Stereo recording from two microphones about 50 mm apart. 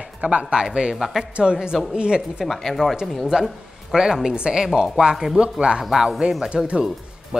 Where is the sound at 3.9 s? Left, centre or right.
Centre.